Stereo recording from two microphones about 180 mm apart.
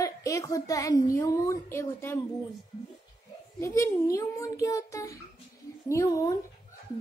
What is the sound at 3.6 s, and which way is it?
A child's voice, 15° left (ahead or behind).